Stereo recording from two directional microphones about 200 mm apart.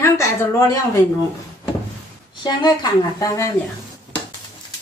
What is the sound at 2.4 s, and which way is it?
A woman's voice, 20° left (ahead or behind).